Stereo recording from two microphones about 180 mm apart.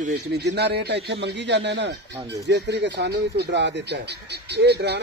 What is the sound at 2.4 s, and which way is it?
Speech, 70° right (ahead or behind).